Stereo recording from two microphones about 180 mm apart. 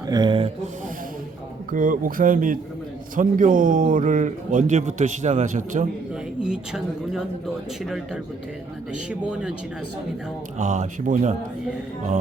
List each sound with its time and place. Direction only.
0.1 s speech: 25° right (ahead or behind)
1.7 s a man's voice: 50° right (ahead or behind)
6.4 s a woman's voice: 5° right (ahead or behind)
10.6 s speech: 40° right (ahead or behind)